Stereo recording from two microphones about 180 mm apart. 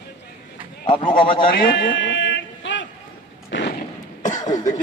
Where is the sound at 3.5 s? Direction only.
80° left.